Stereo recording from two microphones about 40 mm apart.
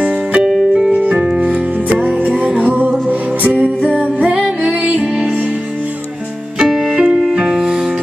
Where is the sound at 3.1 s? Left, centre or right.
Right.